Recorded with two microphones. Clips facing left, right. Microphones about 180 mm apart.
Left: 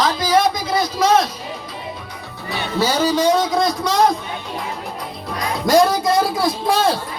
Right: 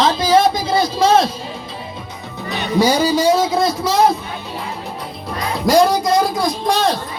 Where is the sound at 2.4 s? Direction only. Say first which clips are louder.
Right 4 dB; 15° right (ahead or behind).